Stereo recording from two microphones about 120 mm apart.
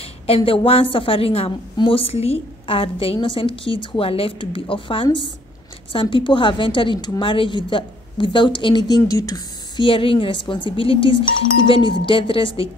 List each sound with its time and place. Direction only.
0.0 s a sound: 50° left (ahead or behind)
0.7 s a woman's voice: 50° left (ahead or behind); by 9.4 s 30° left (ahead or behind)
9.8 s a woman's voice: 45° left (ahead or behind)